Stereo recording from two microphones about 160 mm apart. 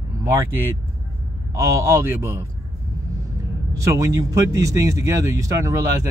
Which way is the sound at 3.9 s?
20° right (ahead or behind).